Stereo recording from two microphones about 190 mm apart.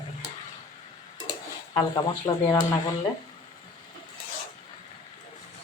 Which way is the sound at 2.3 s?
15° left (ahead or behind).